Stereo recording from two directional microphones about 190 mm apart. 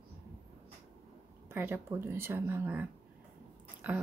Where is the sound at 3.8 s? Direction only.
10° right (ahead or behind).